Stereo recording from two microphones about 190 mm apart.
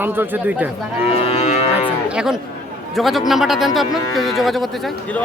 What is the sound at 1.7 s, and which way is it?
Cattle, 5° right (ahead or behind).